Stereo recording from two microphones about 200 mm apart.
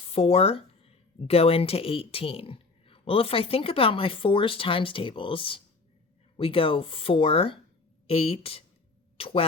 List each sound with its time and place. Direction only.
0.1 s speech: 30° left (ahead or behind)